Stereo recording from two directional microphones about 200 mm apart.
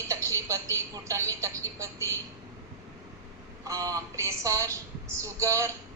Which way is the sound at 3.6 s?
15° right (ahead or behind).